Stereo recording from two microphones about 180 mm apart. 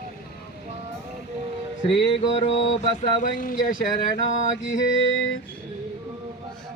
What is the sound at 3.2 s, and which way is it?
Speech, 50° left (ahead or behind).